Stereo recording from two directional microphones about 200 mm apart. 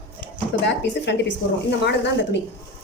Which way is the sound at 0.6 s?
60° left (ahead or behind).